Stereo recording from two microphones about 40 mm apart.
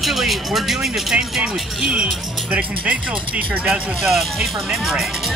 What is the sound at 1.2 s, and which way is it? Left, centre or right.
Speech, centre.